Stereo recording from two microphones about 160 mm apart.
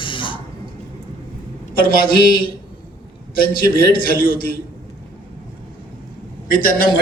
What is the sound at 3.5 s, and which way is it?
Speech, 60° left (ahead or behind).